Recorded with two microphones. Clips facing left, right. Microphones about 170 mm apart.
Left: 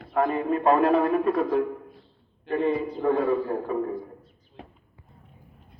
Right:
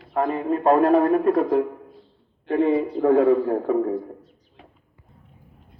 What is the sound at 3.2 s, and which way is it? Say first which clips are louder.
Speech: right 6 dB; 80° right.